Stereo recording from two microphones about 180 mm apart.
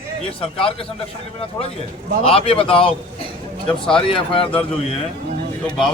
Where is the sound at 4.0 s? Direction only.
30° left (ahead or behind).